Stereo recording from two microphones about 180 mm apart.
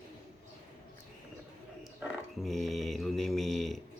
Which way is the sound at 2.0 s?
Centre (ahead or behind).